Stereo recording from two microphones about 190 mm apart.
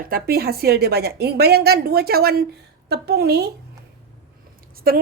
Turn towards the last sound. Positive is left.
turn(degrees=-50)  # may be behind; listen again after turning